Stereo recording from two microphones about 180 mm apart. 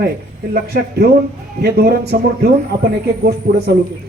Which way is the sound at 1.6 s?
60° right (ahead or behind).